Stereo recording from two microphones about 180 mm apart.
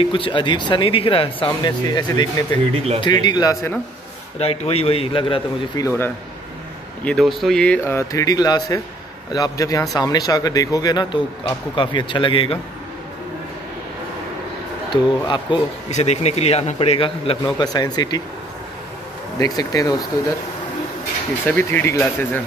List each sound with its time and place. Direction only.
0.0 s speech: 30° left (ahead or behind)
4.4 s a man's voice: 35° left (ahead or behind)
5.9 s speech: 10° left (ahead or behind)
7.1 s speech: centre (ahead or behind); by 12.5 s 30° left (ahead or behind)
14.9 s speech: 25° left (ahead or behind)
15.9 s a man's voice: 35° left (ahead or behind)
19.3 s speech: 20° left (ahead or behind)
21.5 s speech: 10° left (ahead or behind)